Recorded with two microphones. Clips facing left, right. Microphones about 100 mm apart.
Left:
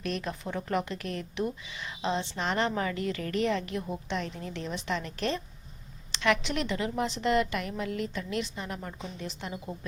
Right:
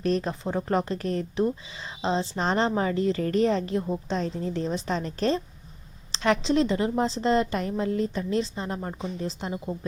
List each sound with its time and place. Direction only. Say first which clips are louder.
0.0 s a woman's voice: right 7 dB; 35° right (ahead or behind)